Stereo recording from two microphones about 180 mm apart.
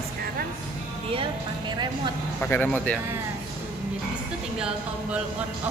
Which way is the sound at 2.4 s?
10° left (ahead or behind).